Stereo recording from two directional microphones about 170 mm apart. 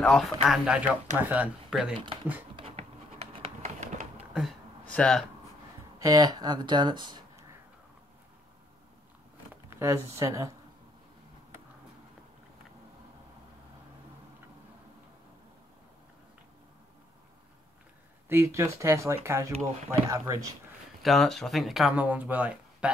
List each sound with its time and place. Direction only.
0.0 s speech: centre (ahead or behind)
2.5 s a sound: 35° right (ahead or behind)
4.3 s a sound: centre (ahead or behind)
5.9 s speech: 20° right (ahead or behind)
9.5 s speech: 15° right (ahead or behind)
18.3 s speech: 15° right (ahead or behind)
21.0 s speech: centre (ahead or behind)